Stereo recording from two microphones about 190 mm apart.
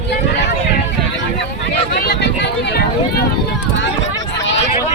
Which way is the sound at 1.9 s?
60° left (ahead or behind).